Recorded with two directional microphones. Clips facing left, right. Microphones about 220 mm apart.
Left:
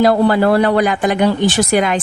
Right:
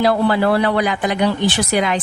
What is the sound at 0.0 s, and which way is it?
A woman's voice, 45° left (ahead or behind).